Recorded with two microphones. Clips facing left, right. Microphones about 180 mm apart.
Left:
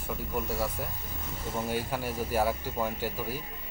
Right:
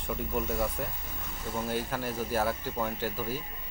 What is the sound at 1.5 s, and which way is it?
Speech, 10° left (ahead or behind).